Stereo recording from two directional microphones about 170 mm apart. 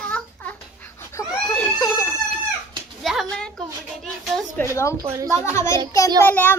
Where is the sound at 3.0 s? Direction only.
Centre (ahead or behind); by 4.9 s 15° left (ahead or behind).